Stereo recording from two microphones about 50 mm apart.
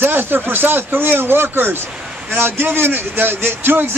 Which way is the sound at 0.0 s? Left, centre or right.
Right.